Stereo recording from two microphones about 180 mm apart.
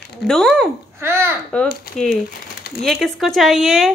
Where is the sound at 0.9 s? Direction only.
15° right (ahead or behind).